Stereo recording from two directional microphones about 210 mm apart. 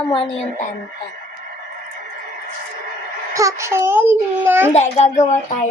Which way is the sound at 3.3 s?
15° right (ahead or behind).